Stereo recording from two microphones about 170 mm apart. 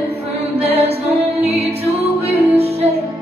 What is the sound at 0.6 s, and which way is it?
Music, 35° right (ahead or behind).